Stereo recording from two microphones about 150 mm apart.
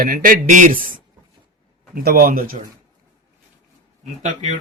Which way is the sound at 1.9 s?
85° right.